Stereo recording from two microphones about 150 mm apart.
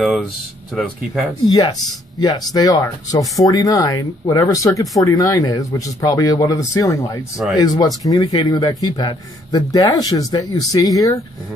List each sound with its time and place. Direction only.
0.0 s speech: centre (ahead or behind)
1.5 s speech: 30° left (ahead or behind)